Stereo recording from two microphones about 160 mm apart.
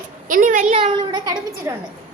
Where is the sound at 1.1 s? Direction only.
25° right (ahead or behind).